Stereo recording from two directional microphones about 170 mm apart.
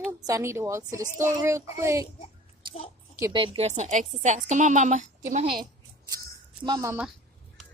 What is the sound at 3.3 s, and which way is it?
Speech, 35° right (ahead or behind).